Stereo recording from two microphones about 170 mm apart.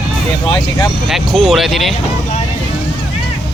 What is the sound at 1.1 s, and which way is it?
Speech, centre (ahead or behind).